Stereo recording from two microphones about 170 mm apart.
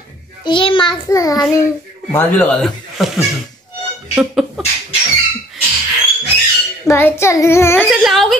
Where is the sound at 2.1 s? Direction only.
10° left (ahead or behind).